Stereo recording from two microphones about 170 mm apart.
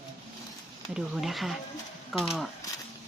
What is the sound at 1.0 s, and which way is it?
Speech, centre (ahead or behind).